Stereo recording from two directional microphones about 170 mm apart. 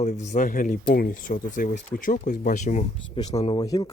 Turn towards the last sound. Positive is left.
turn(degrees=20)  # may be behind; listen again after turning